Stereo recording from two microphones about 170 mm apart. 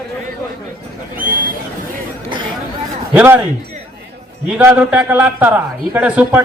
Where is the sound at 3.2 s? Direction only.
10° right (ahead or behind).